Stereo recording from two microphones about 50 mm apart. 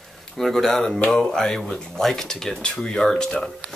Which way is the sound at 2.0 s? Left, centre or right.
Centre.